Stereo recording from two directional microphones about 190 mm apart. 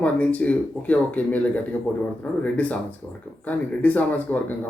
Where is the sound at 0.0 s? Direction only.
5° left (ahead or behind).